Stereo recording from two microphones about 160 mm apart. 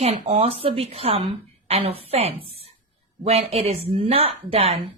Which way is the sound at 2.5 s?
40° right (ahead or behind).